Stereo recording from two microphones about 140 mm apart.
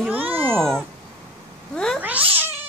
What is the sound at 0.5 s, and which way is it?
Speech, 5° left (ahead or behind).